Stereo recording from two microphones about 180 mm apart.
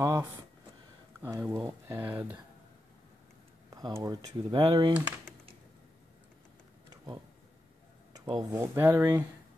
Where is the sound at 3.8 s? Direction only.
20° right (ahead or behind).